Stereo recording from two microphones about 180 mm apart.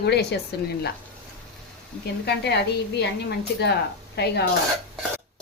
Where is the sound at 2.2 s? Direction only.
70° left (ahead or behind).